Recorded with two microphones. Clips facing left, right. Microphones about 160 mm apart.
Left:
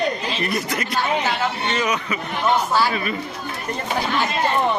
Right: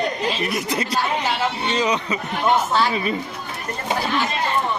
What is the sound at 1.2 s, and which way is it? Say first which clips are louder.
Speech: even; 20° right (ahead or behind).